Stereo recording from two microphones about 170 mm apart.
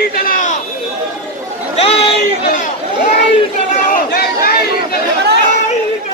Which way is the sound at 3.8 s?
60° left (ahead or behind).